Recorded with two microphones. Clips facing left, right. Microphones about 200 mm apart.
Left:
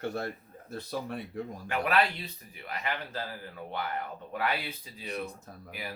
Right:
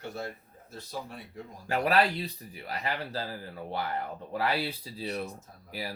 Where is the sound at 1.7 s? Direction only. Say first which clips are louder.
Right 3 dB; 35° right (ahead or behind).